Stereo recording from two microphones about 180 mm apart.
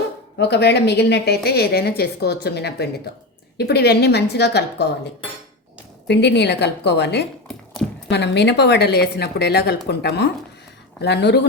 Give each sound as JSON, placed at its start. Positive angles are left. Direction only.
{"t": 0.3, "sound": "a woman's voice", "side_deg": 65}
{"t": 6.1, "sound": "a woman's voice", "side_deg": 70}